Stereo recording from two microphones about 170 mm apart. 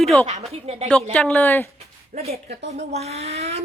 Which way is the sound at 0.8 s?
5° left (ahead or behind).